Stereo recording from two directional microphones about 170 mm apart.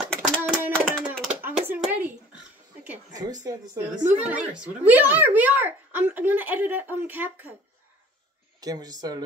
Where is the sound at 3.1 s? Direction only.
25° right (ahead or behind).